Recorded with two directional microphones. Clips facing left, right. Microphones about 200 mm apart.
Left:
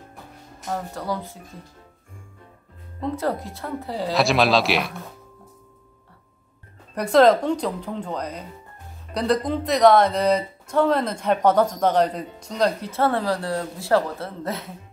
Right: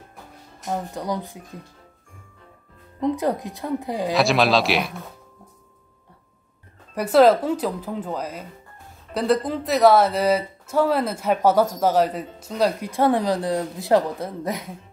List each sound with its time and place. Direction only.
0.7 s speech: 20° right (ahead or behind)
3.0 s speech: 15° right (ahead or behind)
4.1 s speech: centre (ahead or behind)
7.0 s speech: 5° right (ahead or behind)